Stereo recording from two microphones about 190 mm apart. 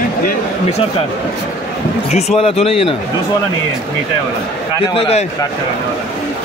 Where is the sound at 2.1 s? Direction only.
35° left (ahead or behind).